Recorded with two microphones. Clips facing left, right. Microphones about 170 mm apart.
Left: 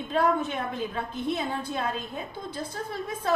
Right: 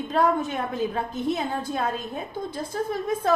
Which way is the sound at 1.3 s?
45° right (ahead or behind).